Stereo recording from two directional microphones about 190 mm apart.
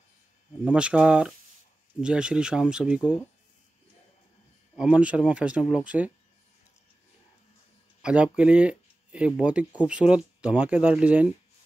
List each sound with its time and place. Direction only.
0.7 s speech: 5° right (ahead or behind)
4.7 s speech: 5° right (ahead or behind)
8.0 s speech: 5° right (ahead or behind)